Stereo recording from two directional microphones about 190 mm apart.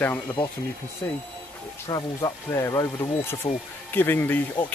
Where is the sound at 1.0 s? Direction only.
15° left (ahead or behind).